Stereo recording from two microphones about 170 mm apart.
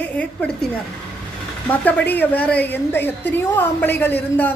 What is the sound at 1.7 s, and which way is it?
A woman's voice, 10° left (ahead or behind).